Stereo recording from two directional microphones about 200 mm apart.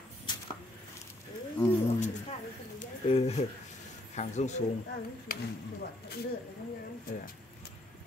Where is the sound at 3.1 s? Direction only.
30° left (ahead or behind).